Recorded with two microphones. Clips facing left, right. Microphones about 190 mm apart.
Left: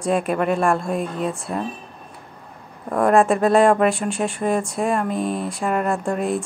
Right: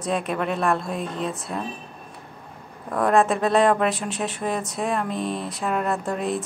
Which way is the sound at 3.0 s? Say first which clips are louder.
Left 3 dB; centre (ahead or behind).